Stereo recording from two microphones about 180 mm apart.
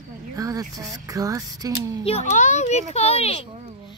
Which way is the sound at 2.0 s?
40° left (ahead or behind).